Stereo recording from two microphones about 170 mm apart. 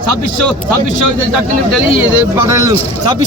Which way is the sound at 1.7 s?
10° right (ahead or behind).